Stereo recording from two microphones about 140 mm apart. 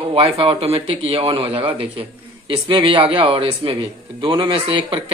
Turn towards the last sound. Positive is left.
turn(degrees=-40)  # may be behind; listen again after turning